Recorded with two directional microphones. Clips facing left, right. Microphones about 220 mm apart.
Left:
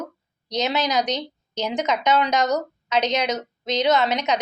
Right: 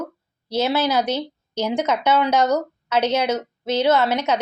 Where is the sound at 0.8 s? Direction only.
15° left (ahead or behind).